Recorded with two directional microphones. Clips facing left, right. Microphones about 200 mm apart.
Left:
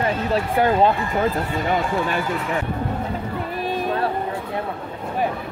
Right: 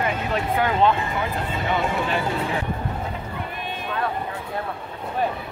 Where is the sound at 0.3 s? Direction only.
35° left (ahead or behind).